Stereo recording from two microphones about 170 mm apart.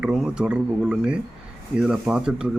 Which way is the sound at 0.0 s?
5° right (ahead or behind).